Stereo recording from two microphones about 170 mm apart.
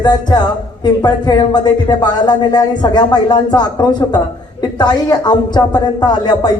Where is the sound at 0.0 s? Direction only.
25° left (ahead or behind).